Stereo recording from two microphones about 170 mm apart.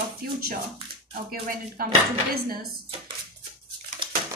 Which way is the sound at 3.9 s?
50° right (ahead or behind).